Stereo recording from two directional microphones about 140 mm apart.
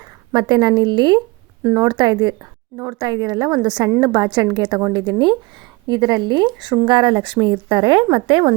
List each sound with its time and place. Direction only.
0.3 s a woman's voice: 35° right (ahead or behind)